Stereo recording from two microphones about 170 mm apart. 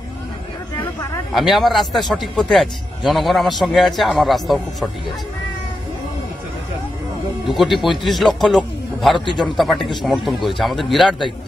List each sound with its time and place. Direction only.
1.3 s a man's voice: centre (ahead or behind)
7.4 s a man's voice: centre (ahead or behind)